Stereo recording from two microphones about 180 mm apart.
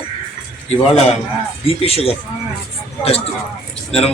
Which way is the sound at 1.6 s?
35° left (ahead or behind).